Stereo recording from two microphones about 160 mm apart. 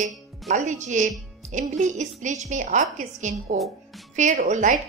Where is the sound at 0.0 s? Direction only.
50° right (ahead or behind).